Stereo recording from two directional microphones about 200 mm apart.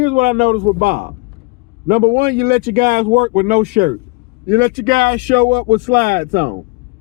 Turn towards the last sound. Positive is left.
turn(degrees=-45)  # may be behind; listen again after turning